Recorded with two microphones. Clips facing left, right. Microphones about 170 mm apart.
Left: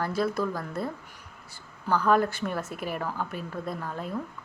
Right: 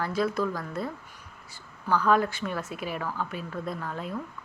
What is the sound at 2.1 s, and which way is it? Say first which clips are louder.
Speech: left 1 dB; 45° left (ahead or behind).